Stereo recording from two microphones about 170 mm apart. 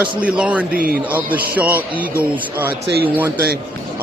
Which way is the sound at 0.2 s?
10° right (ahead or behind).